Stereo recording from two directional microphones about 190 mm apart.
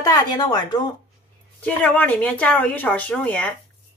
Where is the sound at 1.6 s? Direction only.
10° left (ahead or behind).